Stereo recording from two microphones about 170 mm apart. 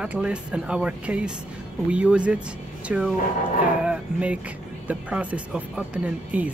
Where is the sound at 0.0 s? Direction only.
5° right (ahead or behind).